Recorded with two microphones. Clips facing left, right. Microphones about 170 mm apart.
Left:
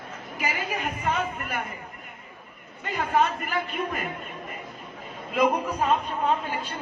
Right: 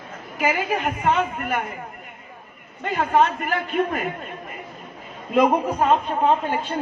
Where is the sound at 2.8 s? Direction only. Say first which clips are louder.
Right 5 dB; 50° right (ahead or behind).